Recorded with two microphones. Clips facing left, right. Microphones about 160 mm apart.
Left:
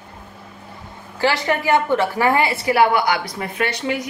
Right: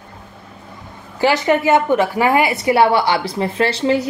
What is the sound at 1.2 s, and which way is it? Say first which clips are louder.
A woman's voice: right 5 dB; 20° right (ahead or behind).